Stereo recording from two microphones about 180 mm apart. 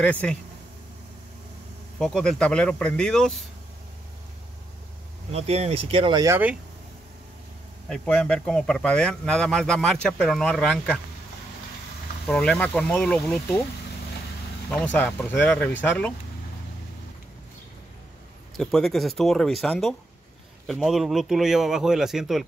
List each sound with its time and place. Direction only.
0.0 s speech: 5° left (ahead or behind)
2.0 s speech: 5° left (ahead or behind)
5.3 s speech: 35° right (ahead or behind)
6.2 s speech: 10° right (ahead or behind)
7.9 s speech: 5° left (ahead or behind)
12.3 s speech: 5° left (ahead or behind)
14.7 s speech: 10° left (ahead or behind)
18.6 s speech: centre (ahead or behind)